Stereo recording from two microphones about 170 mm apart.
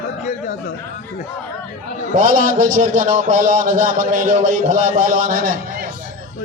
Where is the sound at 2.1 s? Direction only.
50° right (ahead or behind).